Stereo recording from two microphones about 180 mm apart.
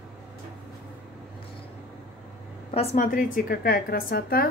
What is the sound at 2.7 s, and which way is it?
A woman's voice, 40° left (ahead or behind).